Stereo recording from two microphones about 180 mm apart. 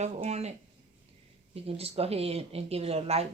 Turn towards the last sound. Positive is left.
turn(degrees=-35)  # may be behind; listen again after turning